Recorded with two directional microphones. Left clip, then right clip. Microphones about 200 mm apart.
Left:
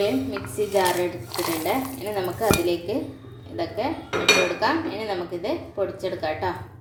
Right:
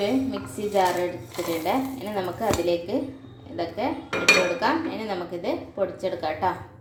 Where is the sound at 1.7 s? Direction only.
5° right (ahead or behind).